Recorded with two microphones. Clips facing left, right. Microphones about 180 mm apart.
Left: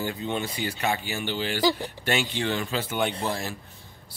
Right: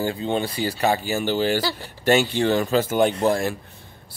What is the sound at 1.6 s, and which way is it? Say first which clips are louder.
Speech: left 4 dB; 15° left (ahead or behind).